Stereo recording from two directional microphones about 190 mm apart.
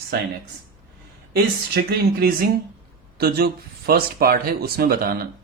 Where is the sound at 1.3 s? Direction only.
55° right (ahead or behind).